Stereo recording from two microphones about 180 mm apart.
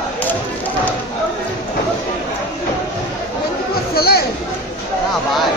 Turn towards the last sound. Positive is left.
turn(degrees=60)  # may be behind; listen again after turning